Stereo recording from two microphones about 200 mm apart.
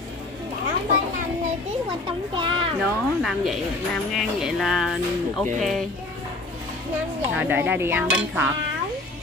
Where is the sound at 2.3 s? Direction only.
25° right (ahead or behind).